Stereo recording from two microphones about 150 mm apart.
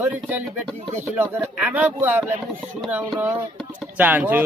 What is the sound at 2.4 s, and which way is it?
Speech, centre (ahead or behind).